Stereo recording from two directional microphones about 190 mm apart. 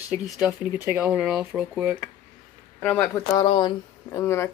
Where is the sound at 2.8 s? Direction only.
5° left (ahead or behind).